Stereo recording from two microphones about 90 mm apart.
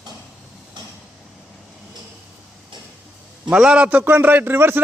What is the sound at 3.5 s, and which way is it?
A man's voice, 10° right (ahead or behind).